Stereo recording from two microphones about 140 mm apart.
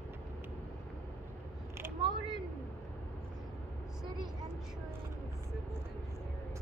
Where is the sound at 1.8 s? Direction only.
15° right (ahead or behind).